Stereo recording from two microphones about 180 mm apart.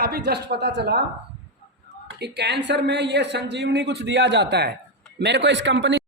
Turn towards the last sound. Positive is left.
turn(degrees=-90)